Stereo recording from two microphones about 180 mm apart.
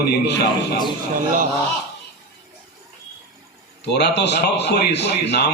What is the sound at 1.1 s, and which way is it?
Speech, 50° right (ahead or behind).